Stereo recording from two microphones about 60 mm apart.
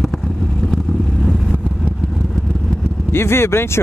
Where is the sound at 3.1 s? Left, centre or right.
Left.